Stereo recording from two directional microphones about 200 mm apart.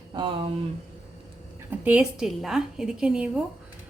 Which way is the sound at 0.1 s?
25° right (ahead or behind).